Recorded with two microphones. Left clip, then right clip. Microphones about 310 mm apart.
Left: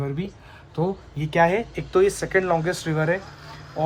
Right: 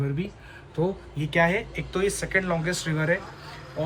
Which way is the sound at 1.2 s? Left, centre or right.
Left.